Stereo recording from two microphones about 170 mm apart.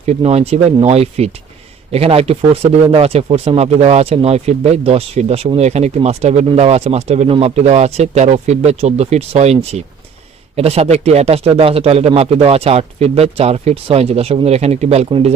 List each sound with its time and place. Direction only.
0.0 s speech: 40° right (ahead or behind)